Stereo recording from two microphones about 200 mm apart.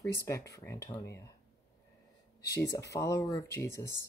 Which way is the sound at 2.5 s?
15° left (ahead or behind).